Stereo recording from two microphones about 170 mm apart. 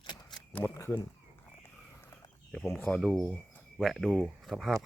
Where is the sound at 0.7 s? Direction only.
20° left (ahead or behind).